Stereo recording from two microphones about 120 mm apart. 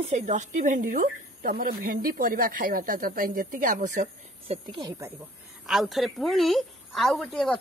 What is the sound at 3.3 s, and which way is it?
Speech, 90° right.